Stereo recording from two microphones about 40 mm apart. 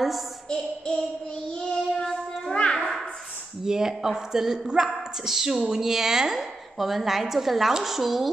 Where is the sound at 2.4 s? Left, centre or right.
Left.